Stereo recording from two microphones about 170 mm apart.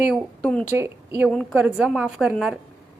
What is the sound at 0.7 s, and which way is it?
Speech, 15° right (ahead or behind).